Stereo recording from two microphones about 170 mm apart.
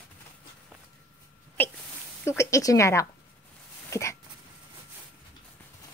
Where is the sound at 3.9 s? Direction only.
15° left (ahead or behind).